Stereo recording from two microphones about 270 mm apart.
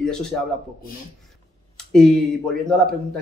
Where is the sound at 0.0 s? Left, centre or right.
Centre.